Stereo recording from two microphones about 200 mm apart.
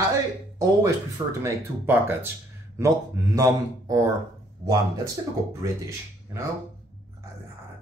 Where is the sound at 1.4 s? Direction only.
10° right (ahead or behind).